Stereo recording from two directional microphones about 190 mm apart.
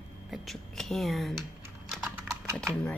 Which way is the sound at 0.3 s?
Centre (ahead or behind).